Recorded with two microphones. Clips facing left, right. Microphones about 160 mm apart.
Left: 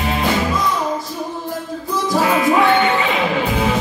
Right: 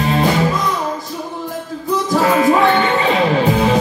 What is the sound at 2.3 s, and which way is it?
Music, 40° right (ahead or behind).